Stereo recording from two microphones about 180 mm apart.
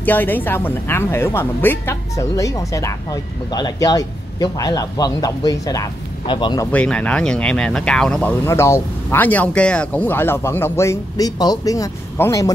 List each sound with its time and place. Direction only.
0.0 s speech: 10° left (ahead or behind)
6.7 s speech: 5° left (ahead or behind)